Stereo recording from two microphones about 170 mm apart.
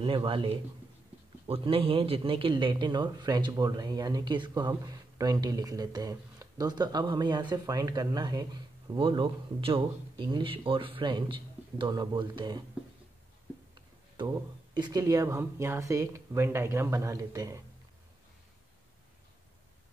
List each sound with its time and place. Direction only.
0.0 s a man's voice: 30° right (ahead or behind)
14.1 s speech: 25° right (ahead or behind)